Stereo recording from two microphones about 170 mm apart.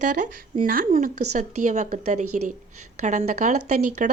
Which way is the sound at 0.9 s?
45° right (ahead or behind).